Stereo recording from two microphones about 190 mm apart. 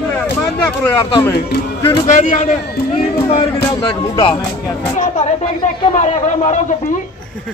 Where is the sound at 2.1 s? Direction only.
40° left (ahead or behind).